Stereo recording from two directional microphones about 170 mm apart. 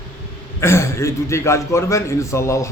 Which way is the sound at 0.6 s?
15° left (ahead or behind).